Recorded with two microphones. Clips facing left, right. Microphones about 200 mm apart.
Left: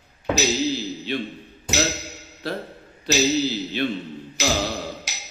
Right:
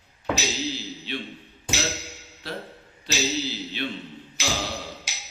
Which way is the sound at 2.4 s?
40° left (ahead or behind).